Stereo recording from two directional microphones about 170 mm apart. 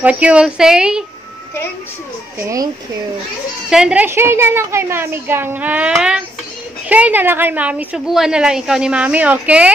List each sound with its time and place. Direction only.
0.0 s a woman's voice: 5° right (ahead or behind)
2.3 s a woman's voice: 20° right (ahead or behind)
3.7 s a woman's voice: 5° right (ahead or behind)